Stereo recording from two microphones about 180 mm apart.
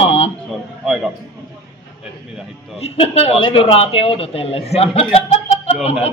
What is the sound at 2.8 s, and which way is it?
A woman's voice, 35° left (ahead or behind).